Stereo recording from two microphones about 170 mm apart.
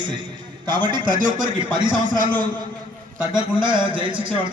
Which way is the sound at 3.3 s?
30° right (ahead or behind).